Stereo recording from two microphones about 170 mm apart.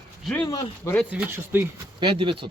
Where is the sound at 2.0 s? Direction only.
25° right (ahead or behind).